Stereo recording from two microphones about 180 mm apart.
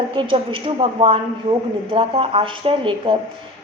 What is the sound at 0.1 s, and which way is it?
A woman's voice, 30° right (ahead or behind).